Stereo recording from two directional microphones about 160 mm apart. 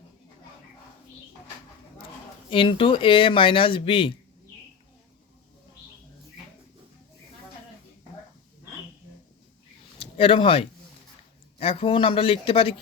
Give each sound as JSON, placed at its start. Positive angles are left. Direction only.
{"t": 2.5, "sound": "speech", "side_deg": 30}
{"t": 10.0, "sound": "speech", "side_deg": 35}